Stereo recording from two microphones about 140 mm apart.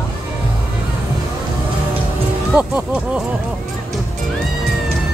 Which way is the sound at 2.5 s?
10° right (ahead or behind).